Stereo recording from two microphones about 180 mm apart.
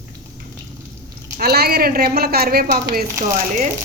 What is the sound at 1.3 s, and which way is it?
A woman's voice, 60° right (ahead or behind).